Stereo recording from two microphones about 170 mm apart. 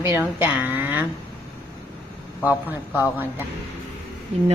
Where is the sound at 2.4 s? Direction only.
10° right (ahead or behind).